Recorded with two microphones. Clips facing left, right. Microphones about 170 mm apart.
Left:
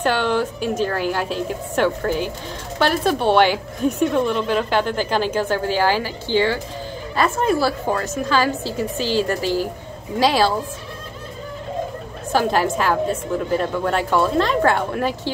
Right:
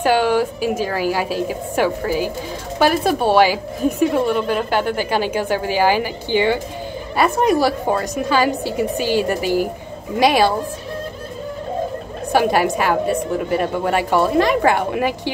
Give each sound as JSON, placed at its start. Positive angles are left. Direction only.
{"t": 0.0, "sound": "a woman's voice", "side_deg": -10}
{"t": 12.3, "sound": "a woman's voice", "side_deg": -10}